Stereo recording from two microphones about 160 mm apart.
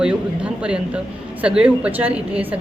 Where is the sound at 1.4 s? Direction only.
5° right (ahead or behind).